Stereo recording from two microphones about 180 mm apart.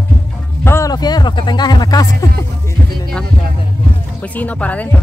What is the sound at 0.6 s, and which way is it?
Music, 15° left (ahead or behind).